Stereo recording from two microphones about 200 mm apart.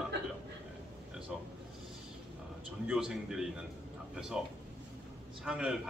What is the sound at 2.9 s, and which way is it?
Speech, 5° right (ahead or behind).